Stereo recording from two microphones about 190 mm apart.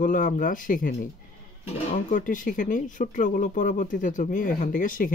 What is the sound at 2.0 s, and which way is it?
Speech, 45° left (ahead or behind).